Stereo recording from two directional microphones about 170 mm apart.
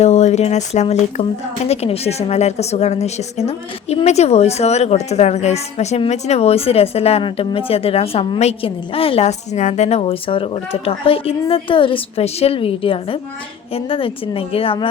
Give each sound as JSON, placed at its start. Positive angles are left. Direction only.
{"t": 0.0, "sound": "speech", "side_deg": 40}